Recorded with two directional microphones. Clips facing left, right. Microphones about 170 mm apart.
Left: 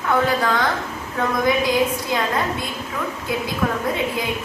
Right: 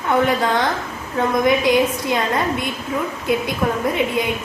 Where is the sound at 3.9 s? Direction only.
20° right (ahead or behind).